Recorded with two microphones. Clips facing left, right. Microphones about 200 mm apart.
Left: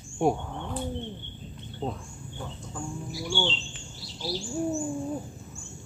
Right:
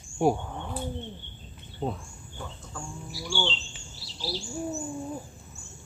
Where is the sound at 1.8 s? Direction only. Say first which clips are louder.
Right 1 dB; 15° right (ahead or behind).